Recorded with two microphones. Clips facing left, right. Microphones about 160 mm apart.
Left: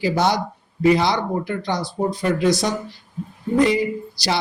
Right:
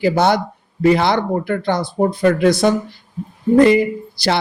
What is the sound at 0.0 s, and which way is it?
Speech, 60° right (ahead or behind).